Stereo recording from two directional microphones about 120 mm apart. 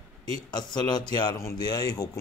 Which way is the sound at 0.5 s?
35° left (ahead or behind).